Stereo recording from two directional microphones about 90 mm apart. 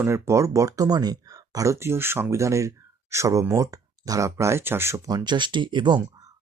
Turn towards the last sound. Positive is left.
turn(degrees=-50)  # may be behind; listen again after turning